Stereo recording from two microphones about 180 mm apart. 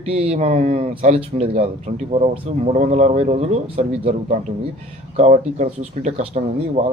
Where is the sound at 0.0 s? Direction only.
35° right (ahead or behind).